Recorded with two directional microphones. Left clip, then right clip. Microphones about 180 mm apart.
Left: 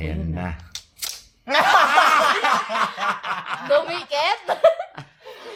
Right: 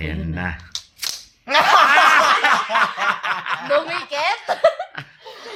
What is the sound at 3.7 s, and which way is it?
Speech, 60° left (ahead or behind).